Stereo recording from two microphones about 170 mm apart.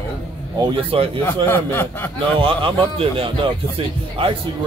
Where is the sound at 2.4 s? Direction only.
30° right (ahead or behind).